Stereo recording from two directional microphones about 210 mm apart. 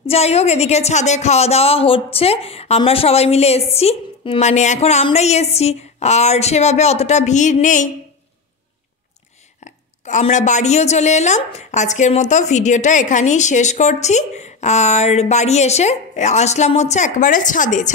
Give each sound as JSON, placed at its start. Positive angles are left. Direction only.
{"t": 0.0, "sound": "a woman's voice", "side_deg": 30}
{"t": 10.0, "sound": "a woman's voice", "side_deg": 35}